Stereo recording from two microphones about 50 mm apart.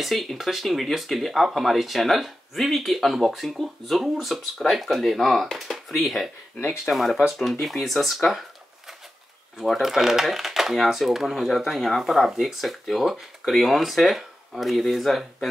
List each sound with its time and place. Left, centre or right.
0.0 s speech: centre
9.6 s speech: centre